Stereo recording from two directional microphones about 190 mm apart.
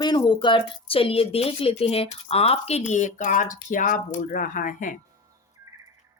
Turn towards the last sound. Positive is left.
turn(degrees=45)  # may be behind; listen again after turning